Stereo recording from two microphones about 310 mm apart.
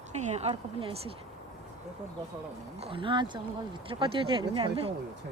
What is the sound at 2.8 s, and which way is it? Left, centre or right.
Speech, centre.